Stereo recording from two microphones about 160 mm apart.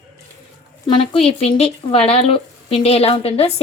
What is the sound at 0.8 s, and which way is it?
A woman's voice, 35° left (ahead or behind).